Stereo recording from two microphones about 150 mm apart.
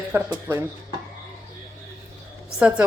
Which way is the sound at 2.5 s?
5° right (ahead or behind).